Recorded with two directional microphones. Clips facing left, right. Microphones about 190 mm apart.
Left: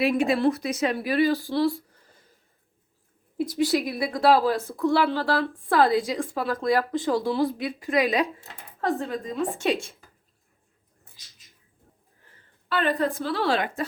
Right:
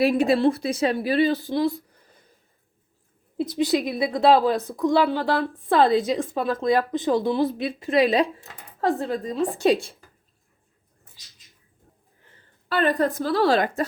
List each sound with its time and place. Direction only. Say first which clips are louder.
0.0 s a woman's voice: right 3 dB; 35° right (ahead or behind); by 2.2 s 20° right (ahead or behind)
3.3 s a woman's voice: right 1 dB; 20° right (ahead or behind)
12.6 s a sound: right 3 dB; 40° right (ahead or behind)
13.0 s speech: right 4 dB; 40° right (ahead or behind)